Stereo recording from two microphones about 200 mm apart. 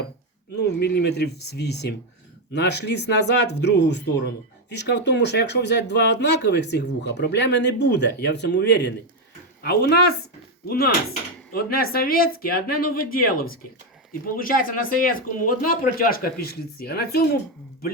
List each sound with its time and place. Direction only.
0.5 s speech: 55° left (ahead or behind)